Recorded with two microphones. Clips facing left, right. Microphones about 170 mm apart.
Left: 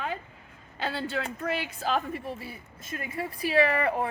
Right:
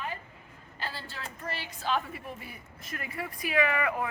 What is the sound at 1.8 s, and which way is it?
A woman's voice, 40° left (ahead or behind).